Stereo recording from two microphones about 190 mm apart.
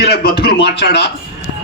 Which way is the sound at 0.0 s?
55° left (ahead or behind).